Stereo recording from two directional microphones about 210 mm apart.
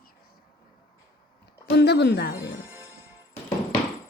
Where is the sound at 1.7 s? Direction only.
55° left (ahead or behind).